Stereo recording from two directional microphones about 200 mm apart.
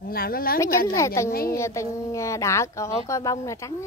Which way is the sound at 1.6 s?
15° left (ahead or behind).